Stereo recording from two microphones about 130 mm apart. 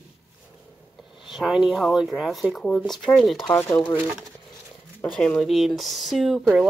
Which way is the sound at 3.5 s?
20° left (ahead or behind).